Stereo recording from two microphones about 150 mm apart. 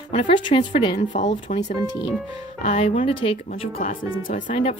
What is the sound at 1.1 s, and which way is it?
Speech, 55° left (ahead or behind).